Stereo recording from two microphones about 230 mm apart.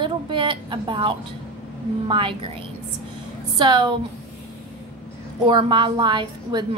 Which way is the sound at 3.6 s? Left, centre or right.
Centre.